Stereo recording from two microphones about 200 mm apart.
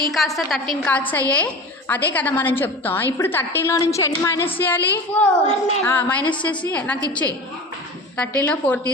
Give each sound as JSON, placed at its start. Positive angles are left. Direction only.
{"t": 0.1, "sound": "a woman's voice", "side_deg": 0}
{"t": 5.5, "sound": "a child's voice", "side_deg": 35}
{"t": 5.8, "sound": "a woman's voice", "side_deg": 10}